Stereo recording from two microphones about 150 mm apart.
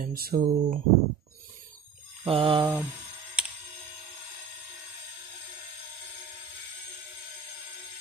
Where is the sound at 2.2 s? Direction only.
40° right (ahead or behind).